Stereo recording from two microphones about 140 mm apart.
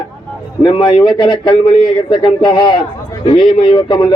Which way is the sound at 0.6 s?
35° left (ahead or behind).